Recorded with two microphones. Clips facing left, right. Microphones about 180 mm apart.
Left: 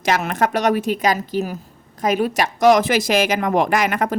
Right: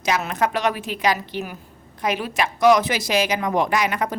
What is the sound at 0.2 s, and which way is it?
A woman's voice, 50° left (ahead or behind).